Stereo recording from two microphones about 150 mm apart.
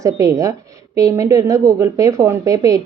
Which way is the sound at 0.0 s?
20° right (ahead or behind).